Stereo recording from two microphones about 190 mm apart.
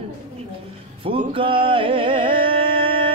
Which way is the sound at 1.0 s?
30° right (ahead or behind).